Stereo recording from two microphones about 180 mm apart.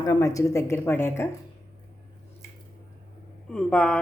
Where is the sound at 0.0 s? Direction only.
20° left (ahead or behind).